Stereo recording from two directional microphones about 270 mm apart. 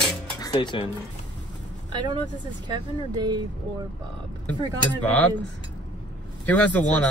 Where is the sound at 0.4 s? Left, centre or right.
Centre.